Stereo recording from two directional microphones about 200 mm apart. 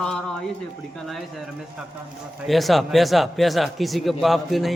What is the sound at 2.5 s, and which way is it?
Speech, centre (ahead or behind).